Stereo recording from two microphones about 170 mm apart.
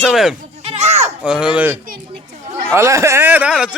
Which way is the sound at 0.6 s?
40° right (ahead or behind).